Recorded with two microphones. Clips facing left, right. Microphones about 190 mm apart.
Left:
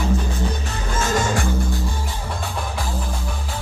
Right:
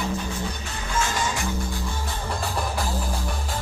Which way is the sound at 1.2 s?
50° left (ahead or behind).